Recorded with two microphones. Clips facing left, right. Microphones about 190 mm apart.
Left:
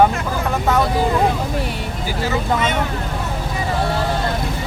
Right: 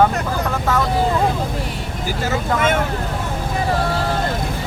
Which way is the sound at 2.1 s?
50° right (ahead or behind).